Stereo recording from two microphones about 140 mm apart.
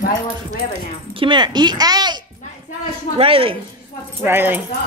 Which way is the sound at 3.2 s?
40° right (ahead or behind).